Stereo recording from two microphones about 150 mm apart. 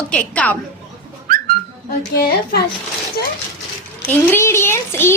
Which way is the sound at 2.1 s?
85° left.